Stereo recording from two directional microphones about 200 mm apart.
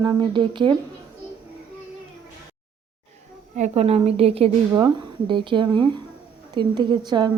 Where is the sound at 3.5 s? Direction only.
35° right (ahead or behind).